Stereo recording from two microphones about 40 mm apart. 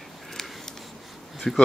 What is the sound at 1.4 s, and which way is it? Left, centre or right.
Speech, centre.